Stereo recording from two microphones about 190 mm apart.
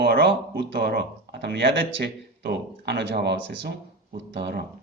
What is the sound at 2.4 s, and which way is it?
A man's voice, 60° right (ahead or behind).